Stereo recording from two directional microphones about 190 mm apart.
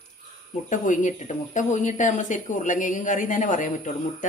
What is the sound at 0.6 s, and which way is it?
Speech, 40° left (ahead or behind).